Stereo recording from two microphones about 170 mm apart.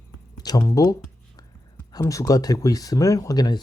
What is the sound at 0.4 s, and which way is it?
Speech, 20° left (ahead or behind).